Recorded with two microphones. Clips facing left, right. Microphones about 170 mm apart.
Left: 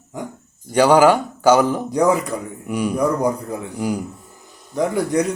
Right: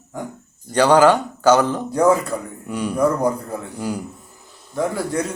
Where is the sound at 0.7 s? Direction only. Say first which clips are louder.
Left 1 dB; 10° left (ahead or behind).